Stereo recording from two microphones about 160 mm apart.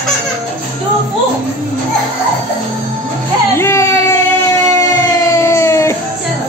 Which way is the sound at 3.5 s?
15° left (ahead or behind).